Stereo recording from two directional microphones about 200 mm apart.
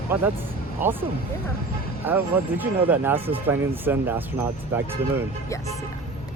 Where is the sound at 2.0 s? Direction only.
10° right (ahead or behind).